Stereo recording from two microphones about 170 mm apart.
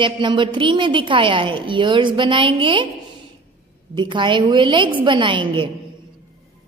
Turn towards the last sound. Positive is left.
turn(degrees=-30)  # may be behind; listen again after turning